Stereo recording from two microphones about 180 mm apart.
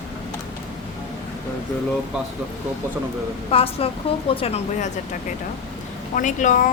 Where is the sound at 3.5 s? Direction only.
30° left (ahead or behind).